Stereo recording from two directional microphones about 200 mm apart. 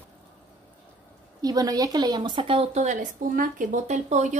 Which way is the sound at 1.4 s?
20° right (ahead or behind).